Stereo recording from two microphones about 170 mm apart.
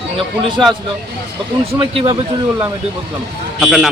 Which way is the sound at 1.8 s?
35° right (ahead or behind).